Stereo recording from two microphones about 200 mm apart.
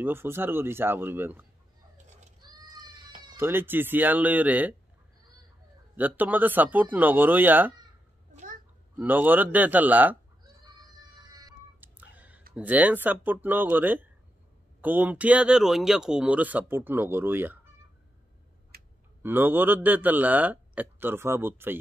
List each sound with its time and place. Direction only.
0.0 s speech: 10° right (ahead or behind)
2.4 s a sound: 20° right (ahead or behind)
3.3 s speech: 10° right (ahead or behind)
5.9 s speech: 10° right (ahead or behind)
8.3 s a sound: 35° right (ahead or behind)
9.0 s speech: 10° right (ahead or behind)
11.8 s telephone dialing: 10° right (ahead or behind)
12.5 s speech: 5° right (ahead or behind)
18.7 s a sound: 50° right (ahead or behind)
19.2 s speech: 10° right (ahead or behind)